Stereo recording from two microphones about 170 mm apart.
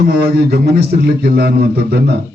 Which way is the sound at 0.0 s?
70° right (ahead or behind).